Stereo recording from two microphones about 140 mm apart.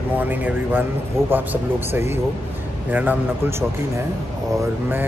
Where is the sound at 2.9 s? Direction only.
10° right (ahead or behind).